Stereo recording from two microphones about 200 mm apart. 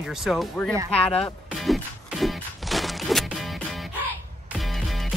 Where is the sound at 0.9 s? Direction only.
5° left (ahead or behind).